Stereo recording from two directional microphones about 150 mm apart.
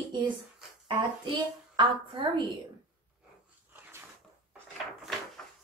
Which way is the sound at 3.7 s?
15° right (ahead or behind).